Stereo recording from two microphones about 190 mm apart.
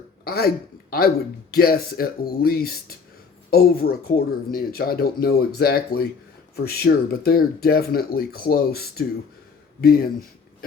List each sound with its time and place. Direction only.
0.3 s speech: 55° left (ahead or behind)